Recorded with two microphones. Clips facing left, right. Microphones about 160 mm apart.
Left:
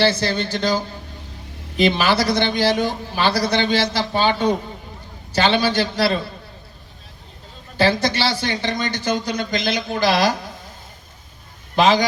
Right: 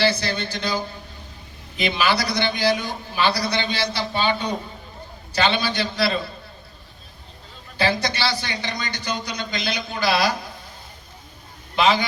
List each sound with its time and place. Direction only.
0.0 s a man's voice: 45° left (ahead or behind)
7.8 s a man's voice: 45° left (ahead or behind)
11.8 s a man's voice: 40° left (ahead or behind)